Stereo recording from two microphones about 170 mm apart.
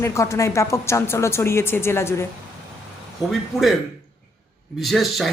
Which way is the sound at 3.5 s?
20° left (ahead or behind).